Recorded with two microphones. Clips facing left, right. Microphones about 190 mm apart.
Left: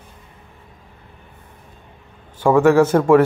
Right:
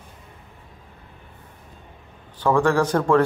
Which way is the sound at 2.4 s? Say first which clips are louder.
Left 6 dB; 10° left (ahead or behind).